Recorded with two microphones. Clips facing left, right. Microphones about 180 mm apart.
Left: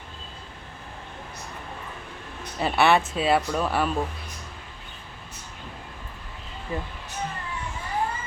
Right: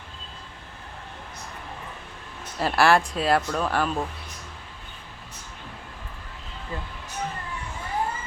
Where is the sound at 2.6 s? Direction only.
Centre (ahead or behind).